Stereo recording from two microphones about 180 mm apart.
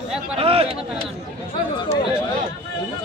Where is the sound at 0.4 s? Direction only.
30° right (ahead or behind).